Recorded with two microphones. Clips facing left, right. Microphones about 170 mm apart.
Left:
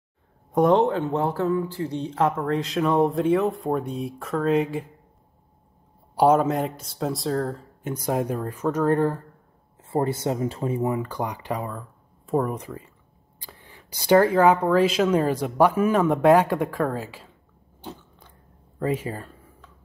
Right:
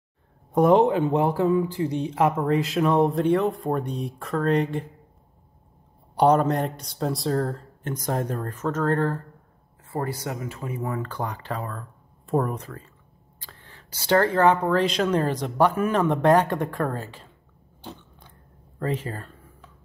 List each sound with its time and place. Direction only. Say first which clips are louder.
0.5 s speech: right 1 dB; 5° right (ahead or behind)
6.1 s speech: left 1 dB; 5° left (ahead or behind)
9.8 s speech: left 5 dB; 25° left (ahead or behind)
10.9 s speech: left 3 dB; 15° left (ahead or behind)
18.8 s speech: left 2 dB; 10° left (ahead or behind)